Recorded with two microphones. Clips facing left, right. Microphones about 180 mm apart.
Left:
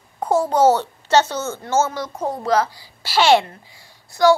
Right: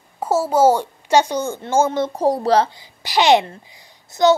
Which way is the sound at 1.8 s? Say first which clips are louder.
Right 7 dB; 25° right (ahead or behind).